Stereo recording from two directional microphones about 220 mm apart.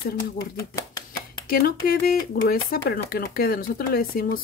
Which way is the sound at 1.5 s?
45° left (ahead or behind).